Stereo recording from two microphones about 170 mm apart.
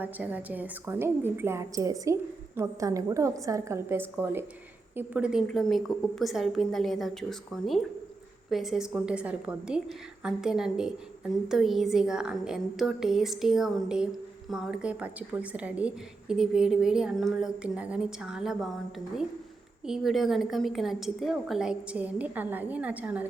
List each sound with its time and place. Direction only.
0.0 s a woman's voice: 10° right (ahead or behind)